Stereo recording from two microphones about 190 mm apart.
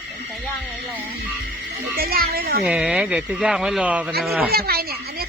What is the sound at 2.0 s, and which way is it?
Children playing, 50° right (ahead or behind).